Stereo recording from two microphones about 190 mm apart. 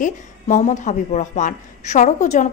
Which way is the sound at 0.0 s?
40° left (ahead or behind).